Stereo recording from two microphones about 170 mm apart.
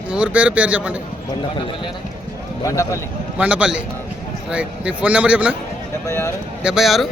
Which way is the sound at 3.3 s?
5° right (ahead or behind).